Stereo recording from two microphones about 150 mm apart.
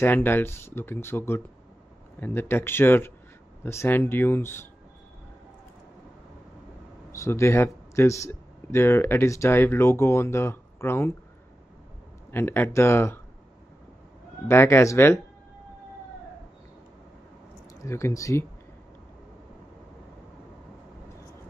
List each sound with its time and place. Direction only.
0.0 s speech: 15° left (ahead or behind)
7.1 s speech: 20° left (ahead or behind)
12.3 s speech: 15° left (ahead or behind)
14.5 s speech: 15° left (ahead or behind)
17.8 s speech: 20° left (ahead or behind)